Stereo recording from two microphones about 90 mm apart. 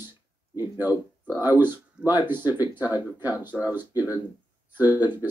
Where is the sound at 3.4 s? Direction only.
20° right (ahead or behind).